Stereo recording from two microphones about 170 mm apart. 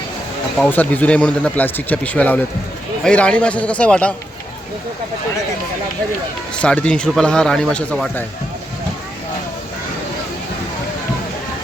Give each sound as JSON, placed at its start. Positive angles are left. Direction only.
{"t": 0.6, "sound": "speech", "side_deg": 10}
{"t": 6.6, "sound": "a man's voice", "side_deg": 5}